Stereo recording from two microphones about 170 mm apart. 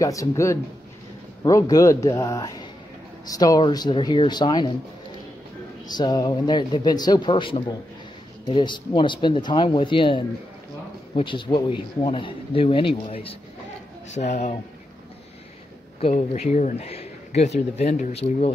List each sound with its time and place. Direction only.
0.0 s speech: 20° left (ahead or behind)
5.9 s speech: 25° left (ahead or behind); by 14.6 s 45° left (ahead or behind)
16.0 s speech: 40° left (ahead or behind)